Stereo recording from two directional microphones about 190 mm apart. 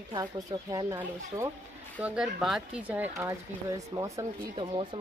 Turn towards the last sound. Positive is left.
turn(degrees=-20)  # may be behind; listen again after turning